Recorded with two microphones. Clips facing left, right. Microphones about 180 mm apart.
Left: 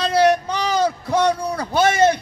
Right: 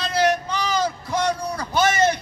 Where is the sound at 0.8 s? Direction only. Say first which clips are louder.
Left 5 dB; 65° left (ahead or behind).